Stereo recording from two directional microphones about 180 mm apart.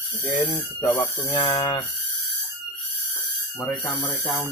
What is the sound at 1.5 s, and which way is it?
Speech, 25° left (ahead or behind).